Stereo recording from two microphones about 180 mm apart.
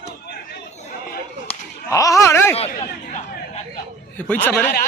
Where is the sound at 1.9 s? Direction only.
15° left (ahead or behind).